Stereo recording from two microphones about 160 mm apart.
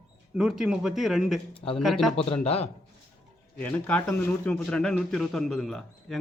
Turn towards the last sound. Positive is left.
turn(degrees=0)  # may be behind; listen again after turning